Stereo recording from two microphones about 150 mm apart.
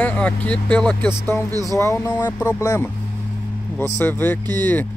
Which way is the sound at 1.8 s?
20° left (ahead or behind).